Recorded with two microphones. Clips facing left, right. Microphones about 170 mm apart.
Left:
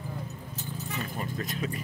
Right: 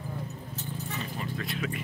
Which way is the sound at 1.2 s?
40° left (ahead or behind).